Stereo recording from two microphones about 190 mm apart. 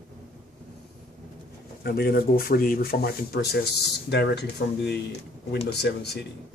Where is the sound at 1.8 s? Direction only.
55° left (ahead or behind).